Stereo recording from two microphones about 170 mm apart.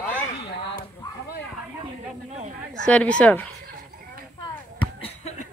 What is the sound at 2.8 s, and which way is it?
Speech, 5° left (ahead or behind).